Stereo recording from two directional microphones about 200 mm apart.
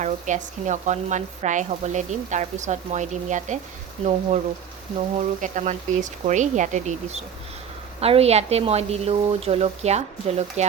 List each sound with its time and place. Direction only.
0.0 s speech: 35° right (ahead or behind)
5.1 s speech: 35° right (ahead or behind)